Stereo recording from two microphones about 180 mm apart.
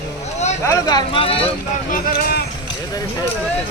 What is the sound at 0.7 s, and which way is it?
Speech, 20° left (ahead or behind).